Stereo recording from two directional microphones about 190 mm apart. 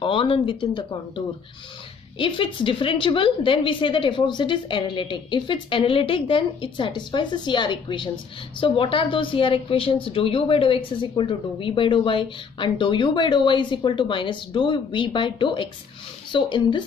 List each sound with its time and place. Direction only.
0.0 s a woman's voice: 25° left (ahead or behind)